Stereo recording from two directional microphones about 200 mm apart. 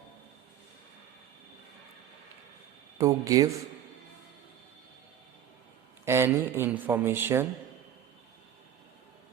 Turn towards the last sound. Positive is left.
turn(degrees=-10)  # may be behind; listen again after turning